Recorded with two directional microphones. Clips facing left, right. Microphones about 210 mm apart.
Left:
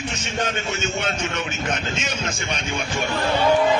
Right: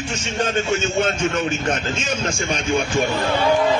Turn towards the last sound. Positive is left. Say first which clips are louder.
# right 7 dB
turn(degrees=-30)  # may be behind; listen again after turning